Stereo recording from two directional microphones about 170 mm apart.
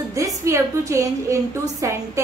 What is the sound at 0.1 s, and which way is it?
A woman's voice, 20° right (ahead or behind).